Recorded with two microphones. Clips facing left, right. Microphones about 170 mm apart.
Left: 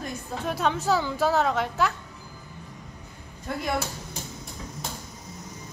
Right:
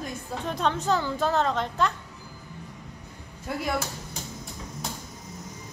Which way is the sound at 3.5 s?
5° right (ahead or behind).